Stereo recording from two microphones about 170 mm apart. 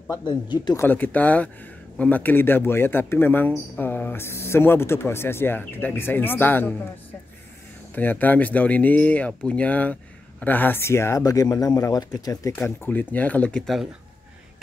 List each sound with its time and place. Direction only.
0.1 s speech: 25° left (ahead or behind)
0.8 s speech: 10° left (ahead or behind)
7.9 s speech: 10° left (ahead or behind)
12.5 s speech: 10° left (ahead or behind)